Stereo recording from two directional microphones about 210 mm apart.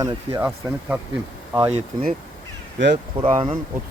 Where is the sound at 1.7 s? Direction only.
35° right (ahead or behind).